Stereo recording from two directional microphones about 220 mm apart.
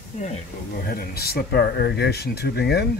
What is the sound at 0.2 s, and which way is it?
Speech, 35° left (ahead or behind).